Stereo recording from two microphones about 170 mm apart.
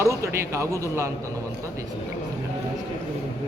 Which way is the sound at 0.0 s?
20° right (ahead or behind).